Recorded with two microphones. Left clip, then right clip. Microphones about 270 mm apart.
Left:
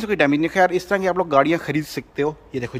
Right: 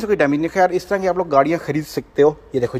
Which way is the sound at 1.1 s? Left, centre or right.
Left.